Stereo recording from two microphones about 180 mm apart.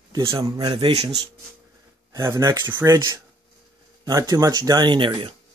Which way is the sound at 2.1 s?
15° right (ahead or behind).